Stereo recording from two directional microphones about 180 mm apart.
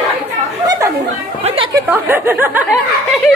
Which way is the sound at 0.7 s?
20° right (ahead or behind).